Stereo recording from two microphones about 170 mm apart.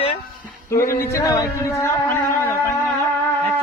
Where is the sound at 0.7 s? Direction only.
15° left (ahead or behind).